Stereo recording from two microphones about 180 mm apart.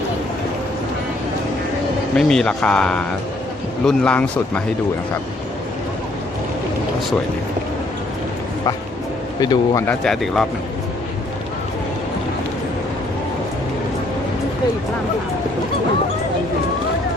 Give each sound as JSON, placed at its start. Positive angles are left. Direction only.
{"t": 2.1, "sound": "speech", "side_deg": 5}
{"t": 9.4, "sound": "speech", "side_deg": 20}
{"t": 9.8, "sound": "speech", "side_deg": 5}